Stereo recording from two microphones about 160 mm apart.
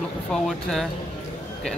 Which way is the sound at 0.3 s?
5° left (ahead or behind).